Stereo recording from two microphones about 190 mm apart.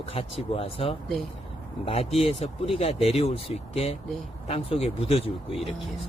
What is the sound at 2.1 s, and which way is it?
Speech, 30° left (ahead or behind).